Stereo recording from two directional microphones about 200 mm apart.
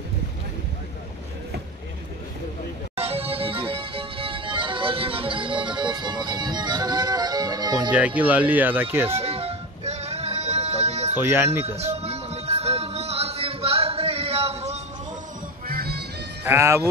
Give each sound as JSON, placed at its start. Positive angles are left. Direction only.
{"t": 3.0, "sound": "music", "side_deg": -30}
{"t": 7.9, "sound": "speech", "side_deg": -5}
{"t": 9.1, "sound": "music", "side_deg": -30}
{"t": 11.1, "sound": "speech", "side_deg": -10}
{"t": 11.6, "sound": "music", "side_deg": -30}
{"t": 15.6, "sound": "music", "side_deg": -50}
{"t": 16.4, "sound": "speech", "side_deg": -15}